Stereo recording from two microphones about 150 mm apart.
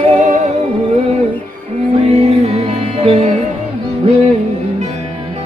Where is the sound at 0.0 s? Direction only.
50° right (ahead or behind).